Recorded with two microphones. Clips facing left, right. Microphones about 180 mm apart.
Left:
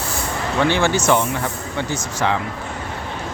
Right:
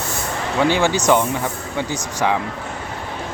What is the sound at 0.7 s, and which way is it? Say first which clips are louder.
Speech: right 2 dB; 15° right (ahead or behind).